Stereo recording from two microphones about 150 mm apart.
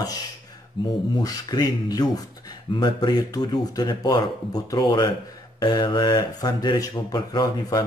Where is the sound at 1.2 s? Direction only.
25° left (ahead or behind).